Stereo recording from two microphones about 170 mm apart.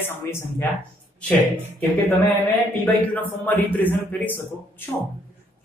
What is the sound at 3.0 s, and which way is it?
Speech, 10° left (ahead or behind).